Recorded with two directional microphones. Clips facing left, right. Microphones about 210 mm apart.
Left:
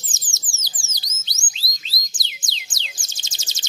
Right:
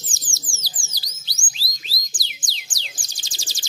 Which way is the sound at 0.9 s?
20° left (ahead or behind).